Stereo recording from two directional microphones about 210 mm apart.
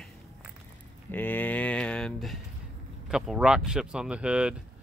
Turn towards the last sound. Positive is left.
turn(degrees=-5)  # may be behind; listen again after turning